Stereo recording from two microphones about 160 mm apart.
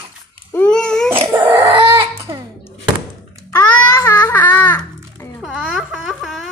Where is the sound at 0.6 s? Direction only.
5° left (ahead or behind).